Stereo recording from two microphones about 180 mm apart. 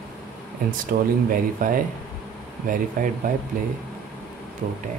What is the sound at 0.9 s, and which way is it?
Speech, 65° right (ahead or behind).